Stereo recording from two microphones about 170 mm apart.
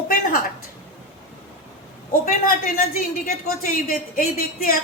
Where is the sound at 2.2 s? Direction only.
55° left (ahead or behind).